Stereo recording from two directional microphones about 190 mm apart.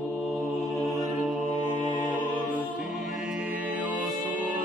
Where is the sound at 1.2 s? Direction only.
Centre (ahead or behind).